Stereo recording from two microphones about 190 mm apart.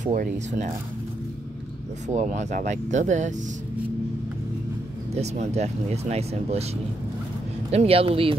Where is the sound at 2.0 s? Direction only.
40° right (ahead or behind).